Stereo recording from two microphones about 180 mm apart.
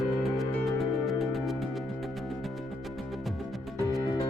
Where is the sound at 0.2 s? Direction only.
Centre (ahead or behind).